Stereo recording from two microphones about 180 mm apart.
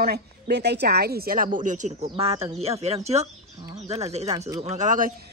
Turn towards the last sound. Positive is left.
turn(degrees=-45)  # may be behind; listen again after turning